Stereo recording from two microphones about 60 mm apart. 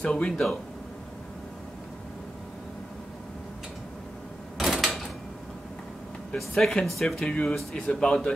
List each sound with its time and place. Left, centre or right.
0.0 s speech: centre
4.6 s drawer open or close: centre
6.3 s speech: centre
7.2 s speech: centre